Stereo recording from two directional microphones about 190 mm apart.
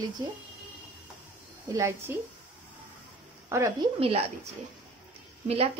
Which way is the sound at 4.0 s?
30° right (ahead or behind).